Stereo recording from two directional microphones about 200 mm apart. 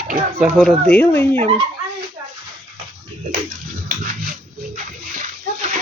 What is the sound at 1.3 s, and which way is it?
Speech, 30° right (ahead or behind).